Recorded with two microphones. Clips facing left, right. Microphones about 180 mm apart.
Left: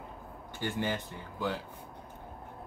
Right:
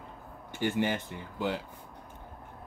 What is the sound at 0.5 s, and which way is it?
Speech, 15° right (ahead or behind).